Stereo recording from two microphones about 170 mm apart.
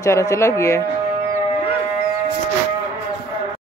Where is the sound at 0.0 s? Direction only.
15° left (ahead or behind).